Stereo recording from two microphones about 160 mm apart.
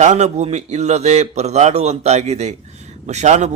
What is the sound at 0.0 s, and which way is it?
Speech, 45° right (ahead or behind).